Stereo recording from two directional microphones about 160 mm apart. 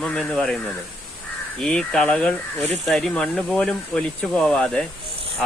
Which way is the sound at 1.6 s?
5° left (ahead or behind).